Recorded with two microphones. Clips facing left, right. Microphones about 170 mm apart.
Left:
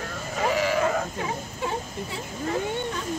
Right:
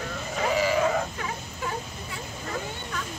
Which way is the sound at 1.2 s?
30° left (ahead or behind).